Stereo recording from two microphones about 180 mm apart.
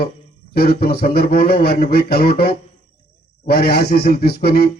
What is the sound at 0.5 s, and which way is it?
A man's voice, 60° left (ahead or behind).